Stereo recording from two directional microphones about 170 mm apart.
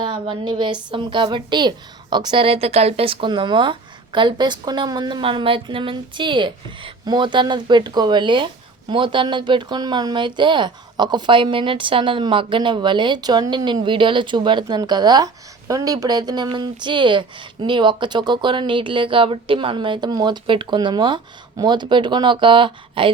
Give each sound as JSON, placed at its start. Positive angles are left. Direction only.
{"t": 0.0, "sound": "a woman's voice", "side_deg": -30}